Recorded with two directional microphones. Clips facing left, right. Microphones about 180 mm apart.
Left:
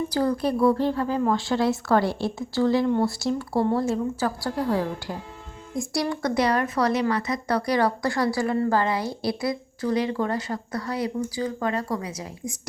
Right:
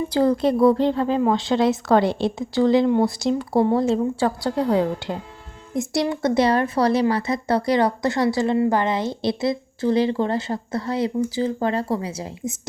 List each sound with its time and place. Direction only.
0.1 s speech: 25° right (ahead or behind)